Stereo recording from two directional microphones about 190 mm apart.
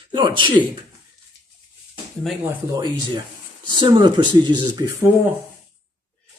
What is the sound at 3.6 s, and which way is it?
Speech, 25° right (ahead or behind).